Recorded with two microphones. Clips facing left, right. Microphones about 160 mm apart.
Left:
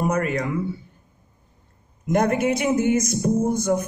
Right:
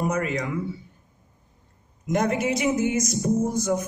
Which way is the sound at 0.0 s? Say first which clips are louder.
Left 3 dB; 55° left (ahead or behind).